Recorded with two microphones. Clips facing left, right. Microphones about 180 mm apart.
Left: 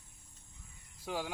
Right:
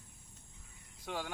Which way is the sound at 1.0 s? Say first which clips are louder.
Left 2 dB; 5° left (ahead or behind).